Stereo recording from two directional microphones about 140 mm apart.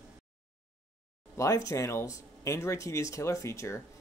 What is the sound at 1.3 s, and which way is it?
Speech, 20° left (ahead or behind).